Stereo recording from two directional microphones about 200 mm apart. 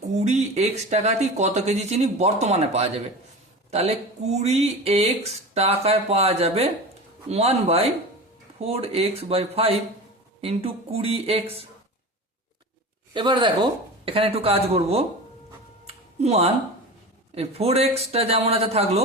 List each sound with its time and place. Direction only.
0.1 s speech: 35° right (ahead or behind)
13.1 s speech: 25° right (ahead or behind)
16.2 s speech: 30° right (ahead or behind)